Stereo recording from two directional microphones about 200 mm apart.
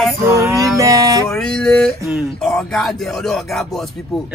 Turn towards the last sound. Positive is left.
turn(degrees=0)  # may be behind; listen again after turning